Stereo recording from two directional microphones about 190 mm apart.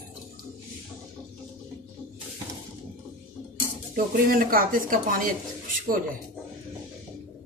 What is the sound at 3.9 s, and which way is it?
Speech, 50° right (ahead or behind).